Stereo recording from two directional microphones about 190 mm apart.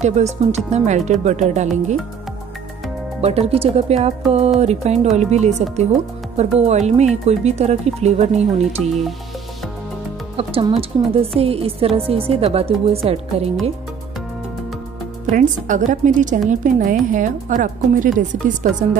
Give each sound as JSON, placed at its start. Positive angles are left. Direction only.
{"t": 0.0, "sound": "speech", "side_deg": -35}
{"t": 3.2, "sound": "speech", "side_deg": -35}
{"t": 10.3, "sound": "speech", "side_deg": -30}
{"t": 15.2, "sound": "a woman's voice", "side_deg": -45}